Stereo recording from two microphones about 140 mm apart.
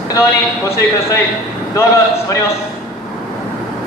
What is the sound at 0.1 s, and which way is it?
Speech, 20° left (ahead or behind).